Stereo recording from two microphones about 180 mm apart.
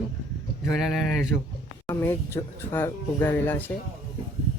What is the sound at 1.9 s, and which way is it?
Speech, 15° left (ahead or behind).